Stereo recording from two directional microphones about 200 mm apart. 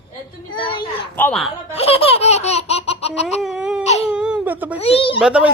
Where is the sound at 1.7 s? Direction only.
30° left (ahead or behind).